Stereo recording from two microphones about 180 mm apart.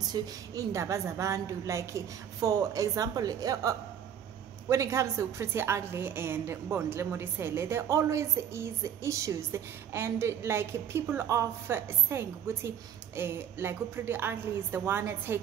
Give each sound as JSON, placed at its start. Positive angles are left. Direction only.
{"t": 0.0, "sound": "a woman's voice", "side_deg": -20}